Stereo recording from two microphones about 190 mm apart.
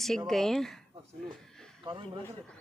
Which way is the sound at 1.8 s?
25° right (ahead or behind).